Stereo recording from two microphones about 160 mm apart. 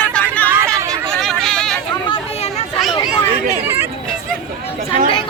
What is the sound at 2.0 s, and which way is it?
Chatter, 35° left (ahead or behind).